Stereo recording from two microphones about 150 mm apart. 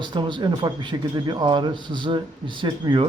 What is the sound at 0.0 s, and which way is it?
Speech, 30° right (ahead or behind).